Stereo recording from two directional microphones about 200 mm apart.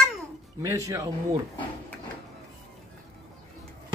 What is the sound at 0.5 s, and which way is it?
Speech, 15° right (ahead or behind).